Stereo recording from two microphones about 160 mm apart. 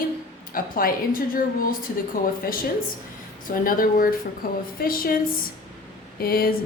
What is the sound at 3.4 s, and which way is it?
A woman's voice, 60° left (ahead or behind).